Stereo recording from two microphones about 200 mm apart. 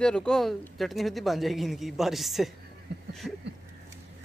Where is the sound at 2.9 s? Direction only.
55° right (ahead or behind).